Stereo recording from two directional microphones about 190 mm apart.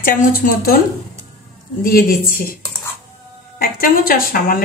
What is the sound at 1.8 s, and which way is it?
Speech, 50° left (ahead or behind).